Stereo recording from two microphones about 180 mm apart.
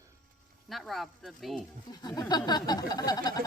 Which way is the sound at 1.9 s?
20° left (ahead or behind).